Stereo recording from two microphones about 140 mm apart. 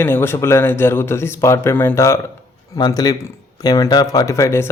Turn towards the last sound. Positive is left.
turn(degrees=20)  # may be behind; listen again after turning